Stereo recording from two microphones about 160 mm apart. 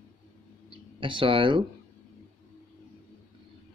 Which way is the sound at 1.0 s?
30° right (ahead or behind).